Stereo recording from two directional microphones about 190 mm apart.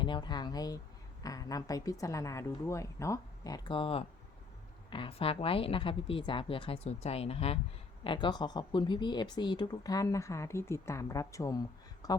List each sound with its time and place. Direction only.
0.0 s speech: 25° left (ahead or behind)